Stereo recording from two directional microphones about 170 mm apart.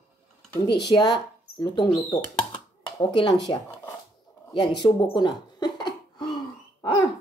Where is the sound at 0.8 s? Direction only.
25° left (ahead or behind).